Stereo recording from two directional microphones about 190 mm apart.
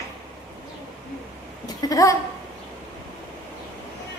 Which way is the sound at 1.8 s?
15° left (ahead or behind).